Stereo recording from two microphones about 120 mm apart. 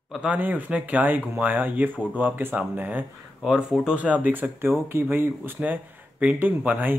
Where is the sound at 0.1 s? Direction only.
10° right (ahead or behind).